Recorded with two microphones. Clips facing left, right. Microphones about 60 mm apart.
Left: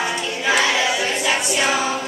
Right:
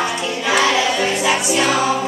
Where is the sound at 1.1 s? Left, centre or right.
Centre.